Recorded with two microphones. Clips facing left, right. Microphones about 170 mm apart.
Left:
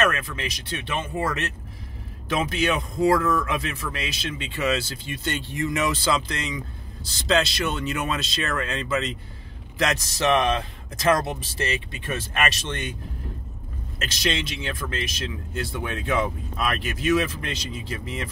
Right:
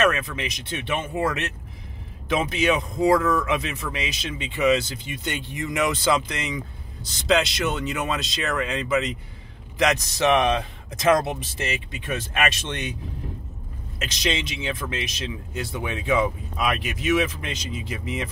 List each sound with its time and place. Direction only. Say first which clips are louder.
0.1 s speech: right 2 dB; 20° right (ahead or behind)
14.2 s speech: right 1 dB; 15° right (ahead or behind)